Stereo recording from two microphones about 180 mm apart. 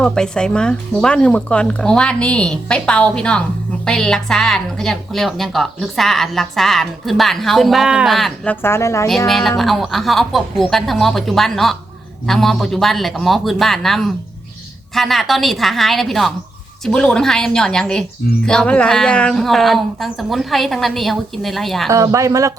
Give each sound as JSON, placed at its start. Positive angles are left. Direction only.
{"t": 0.0, "sound": "a woman's voice", "side_deg": 5}
{"t": 8.6, "sound": "a woman's voice", "side_deg": 15}
{"t": 9.0, "sound": "a woman's voice", "side_deg": 0}
{"t": 21.8, "sound": "speech", "side_deg": -20}